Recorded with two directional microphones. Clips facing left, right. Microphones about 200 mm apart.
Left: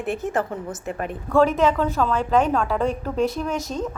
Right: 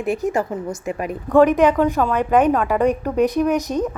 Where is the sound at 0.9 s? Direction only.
10° right (ahead or behind).